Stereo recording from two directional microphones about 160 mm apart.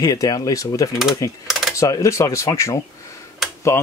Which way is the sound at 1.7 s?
20° left (ahead or behind).